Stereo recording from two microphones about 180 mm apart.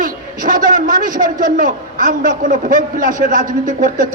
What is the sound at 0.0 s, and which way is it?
A man's voice, 45° right (ahead or behind).